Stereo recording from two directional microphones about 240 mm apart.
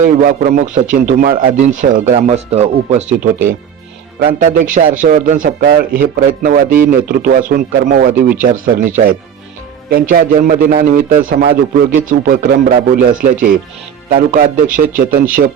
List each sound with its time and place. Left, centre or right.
0.0 s speech: right
4.2 s speech: right
9.9 s speech: right